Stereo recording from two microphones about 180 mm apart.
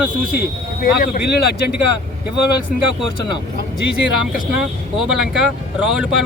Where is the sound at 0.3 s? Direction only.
55° left (ahead or behind).